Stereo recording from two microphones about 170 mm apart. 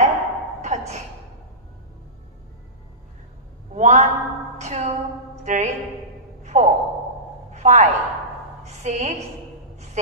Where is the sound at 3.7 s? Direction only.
45° right (ahead or behind).